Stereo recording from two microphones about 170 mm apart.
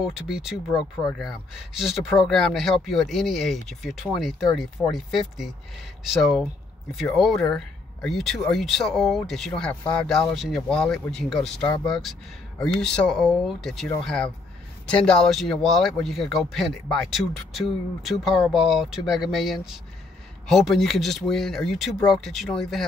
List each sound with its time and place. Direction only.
0.0 s speech: 5° right (ahead or behind)